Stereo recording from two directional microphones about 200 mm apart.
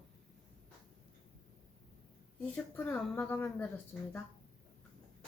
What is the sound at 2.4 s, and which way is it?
A woman's voice, 5° left (ahead or behind).